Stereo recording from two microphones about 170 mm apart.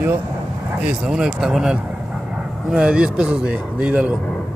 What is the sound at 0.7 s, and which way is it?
A man's voice, 5° right (ahead or behind).